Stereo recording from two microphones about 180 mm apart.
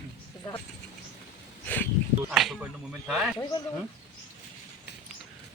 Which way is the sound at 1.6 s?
10° left (ahead or behind).